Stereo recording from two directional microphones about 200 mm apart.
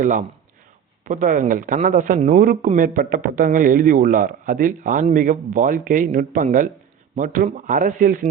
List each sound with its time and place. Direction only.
0.0 s a man's voice: 40° right (ahead or behind)